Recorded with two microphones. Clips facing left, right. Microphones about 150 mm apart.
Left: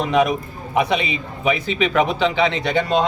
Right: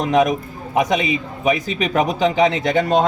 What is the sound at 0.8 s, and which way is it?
A man's voice, 45° right (ahead or behind).